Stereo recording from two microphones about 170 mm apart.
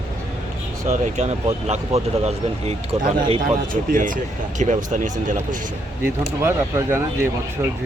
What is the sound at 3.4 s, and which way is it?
Speech, 55° right (ahead or behind).